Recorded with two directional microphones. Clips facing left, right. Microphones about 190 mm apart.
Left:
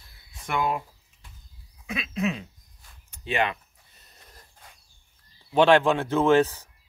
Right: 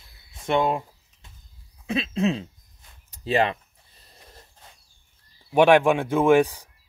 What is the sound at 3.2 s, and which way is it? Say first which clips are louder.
Speech: right 4 dB; 35° right (ahead or behind).